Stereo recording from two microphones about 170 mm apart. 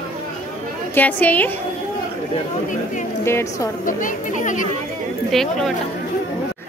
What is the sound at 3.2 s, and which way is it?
Speech, 15° left (ahead or behind).